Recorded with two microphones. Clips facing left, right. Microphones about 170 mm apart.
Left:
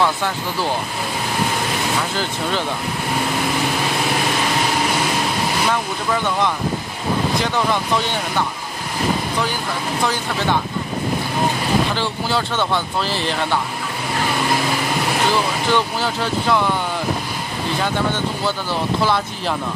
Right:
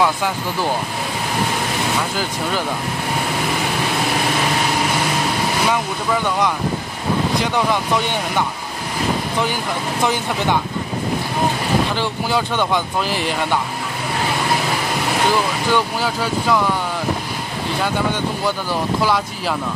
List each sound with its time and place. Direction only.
0.0 s speech: 10° right (ahead or behind)
7.5 s speech: 15° right (ahead or behind)
10.0 s speech: 15° right (ahead or behind)
11.9 s speech: 15° right (ahead or behind)
15.7 s speech: 10° right (ahead or behind)
19.0 s speech: 10° right (ahead or behind)